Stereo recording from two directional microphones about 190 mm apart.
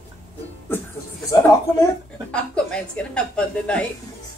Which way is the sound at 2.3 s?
5° left (ahead or behind).